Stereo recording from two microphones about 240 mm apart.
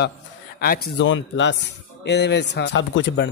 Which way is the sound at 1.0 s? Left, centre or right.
Left.